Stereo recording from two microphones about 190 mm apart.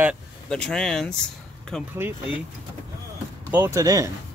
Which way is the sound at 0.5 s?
5° left (ahead or behind).